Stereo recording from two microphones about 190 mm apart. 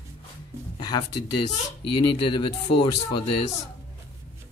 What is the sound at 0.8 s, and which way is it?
Speech, 25° left (ahead or behind).